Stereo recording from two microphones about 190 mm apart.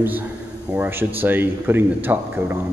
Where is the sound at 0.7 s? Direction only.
10° right (ahead or behind).